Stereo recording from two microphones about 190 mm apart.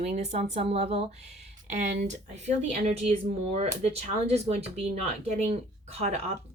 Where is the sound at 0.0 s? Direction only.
35° right (ahead or behind).